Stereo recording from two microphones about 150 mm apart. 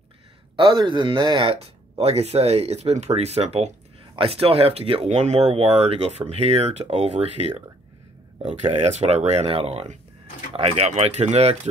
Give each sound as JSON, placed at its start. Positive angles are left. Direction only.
{"t": 0.6, "sound": "speech", "side_deg": -30}